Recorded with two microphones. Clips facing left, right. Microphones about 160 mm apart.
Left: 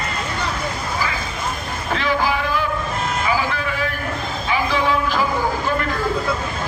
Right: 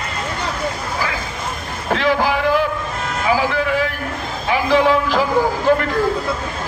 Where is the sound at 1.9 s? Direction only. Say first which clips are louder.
Right 3 dB; 85° right.